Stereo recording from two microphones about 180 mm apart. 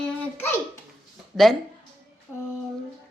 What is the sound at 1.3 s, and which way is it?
Speech, centre (ahead or behind).